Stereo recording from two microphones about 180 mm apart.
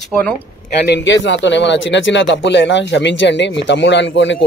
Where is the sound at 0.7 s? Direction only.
70° left (ahead or behind).